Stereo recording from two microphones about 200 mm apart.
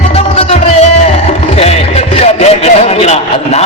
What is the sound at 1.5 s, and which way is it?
Music, 30° left (ahead or behind).